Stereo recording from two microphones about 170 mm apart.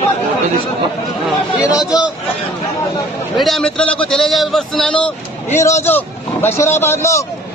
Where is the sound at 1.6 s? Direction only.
20° left (ahead or behind).